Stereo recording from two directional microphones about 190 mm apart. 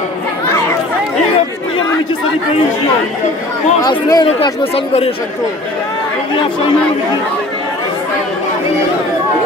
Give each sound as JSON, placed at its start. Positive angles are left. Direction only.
{"t": 3.8, "sound": "speech", "side_deg": 20}